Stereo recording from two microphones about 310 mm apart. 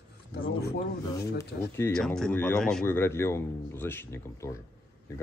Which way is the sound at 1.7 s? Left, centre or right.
Centre.